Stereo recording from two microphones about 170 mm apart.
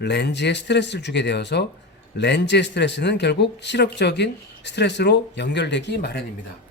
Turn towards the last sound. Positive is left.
turn(degrees=75)  # may be behind; listen again after turning